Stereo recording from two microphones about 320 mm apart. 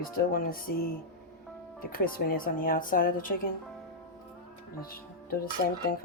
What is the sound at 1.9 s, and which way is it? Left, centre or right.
Dishes, left.